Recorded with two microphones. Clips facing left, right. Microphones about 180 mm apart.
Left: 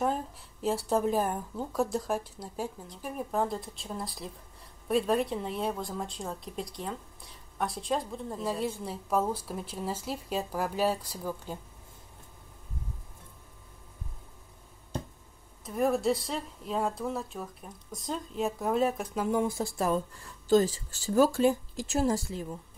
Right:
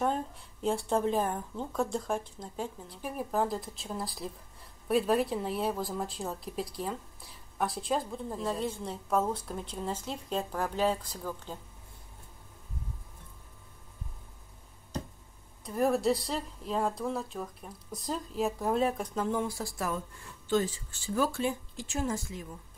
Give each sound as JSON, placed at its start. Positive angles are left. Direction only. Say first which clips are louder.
{"t": 0.0, "sound": "speech", "louder": "even", "side_deg": 5}
{"t": 2.9, "sound": "a woman's voice", "louder": "even", "side_deg": -5}
{"t": 15.6, "sound": "a woman's voice", "louder": "even", "side_deg": 0}
{"t": 19.4, "sound": "speech", "louder": "left 5 dB", "side_deg": 25}
{"t": 20.4, "sound": "speech", "louder": "left 5 dB", "side_deg": 40}